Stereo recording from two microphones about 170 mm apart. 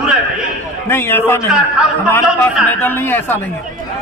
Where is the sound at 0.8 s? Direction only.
15° left (ahead or behind).